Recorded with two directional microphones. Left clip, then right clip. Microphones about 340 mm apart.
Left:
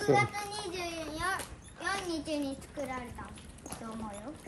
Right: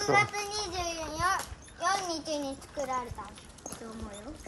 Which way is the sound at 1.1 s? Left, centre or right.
Centre.